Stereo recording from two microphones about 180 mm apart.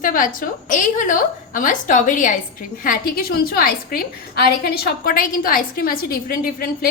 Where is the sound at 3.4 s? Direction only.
55° left (ahead or behind).